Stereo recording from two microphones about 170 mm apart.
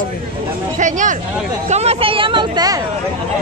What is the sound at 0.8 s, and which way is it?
Speech, 45° right (ahead or behind).